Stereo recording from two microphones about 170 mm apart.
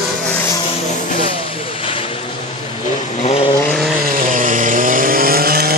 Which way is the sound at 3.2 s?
35° left (ahead or behind).